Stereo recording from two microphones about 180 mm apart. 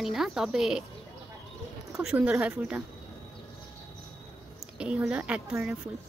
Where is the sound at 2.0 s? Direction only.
5° right (ahead or behind).